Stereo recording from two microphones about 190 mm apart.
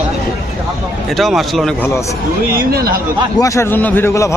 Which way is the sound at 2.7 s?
55° right (ahead or behind).